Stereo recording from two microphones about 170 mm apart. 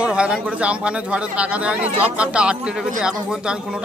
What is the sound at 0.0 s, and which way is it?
Speech, 5° right (ahead or behind).